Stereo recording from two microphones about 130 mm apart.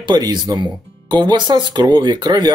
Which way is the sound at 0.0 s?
30° right (ahead or behind).